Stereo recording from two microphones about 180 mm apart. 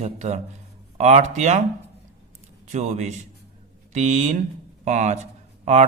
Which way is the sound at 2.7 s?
40° right (ahead or behind).